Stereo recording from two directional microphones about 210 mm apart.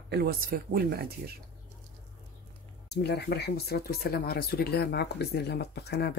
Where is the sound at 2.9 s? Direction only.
50° left (ahead or behind).